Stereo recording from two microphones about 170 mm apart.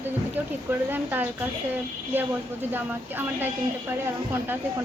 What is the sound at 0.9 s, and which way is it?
Speech, 10° right (ahead or behind).